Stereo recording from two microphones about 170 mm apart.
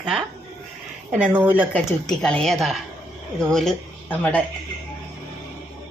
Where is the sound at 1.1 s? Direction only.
10° right (ahead or behind).